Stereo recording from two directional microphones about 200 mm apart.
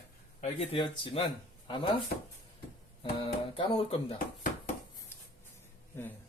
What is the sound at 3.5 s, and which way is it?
Speech, 25° left (ahead or behind).